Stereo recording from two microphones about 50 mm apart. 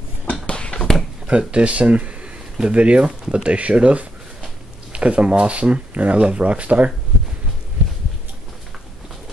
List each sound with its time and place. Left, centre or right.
0.5 s a sound: centre
1.2 s speech: right
3.1 s speech: centre
3.4 s speech: right